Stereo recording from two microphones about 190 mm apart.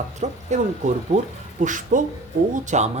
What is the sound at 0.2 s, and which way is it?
Speech, 40° right (ahead or behind).